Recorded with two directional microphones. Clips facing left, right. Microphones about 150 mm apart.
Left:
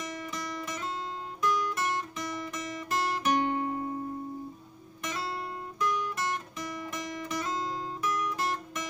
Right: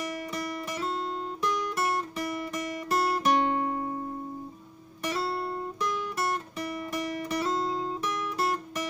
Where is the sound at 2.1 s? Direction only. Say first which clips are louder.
Right 4 dB; 35° right (ahead or behind).